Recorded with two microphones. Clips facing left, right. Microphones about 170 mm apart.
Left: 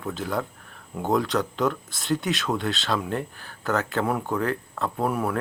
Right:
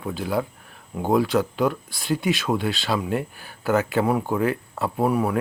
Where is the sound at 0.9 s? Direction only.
5° right (ahead or behind).